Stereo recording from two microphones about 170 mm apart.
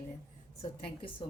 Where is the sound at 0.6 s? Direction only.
30° left (ahead or behind).